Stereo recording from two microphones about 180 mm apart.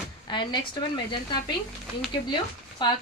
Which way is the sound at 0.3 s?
25° left (ahead or behind).